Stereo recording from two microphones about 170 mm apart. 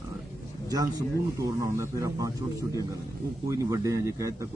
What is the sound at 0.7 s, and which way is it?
A man's voice, 20° right (ahead or behind).